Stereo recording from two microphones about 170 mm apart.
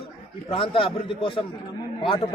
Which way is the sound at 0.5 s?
30° left (ahead or behind).